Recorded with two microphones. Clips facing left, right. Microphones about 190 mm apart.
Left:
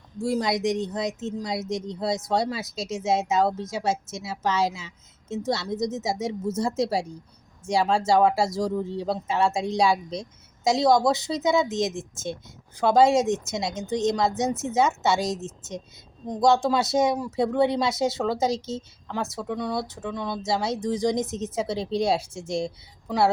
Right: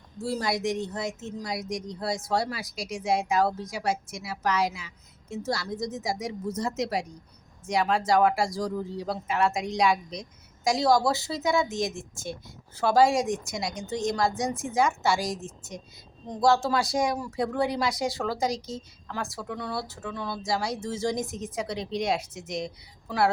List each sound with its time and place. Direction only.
0.2 s speech: 15° left (ahead or behind)